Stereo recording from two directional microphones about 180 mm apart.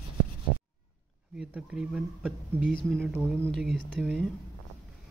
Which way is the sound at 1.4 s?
5° right (ahead or behind).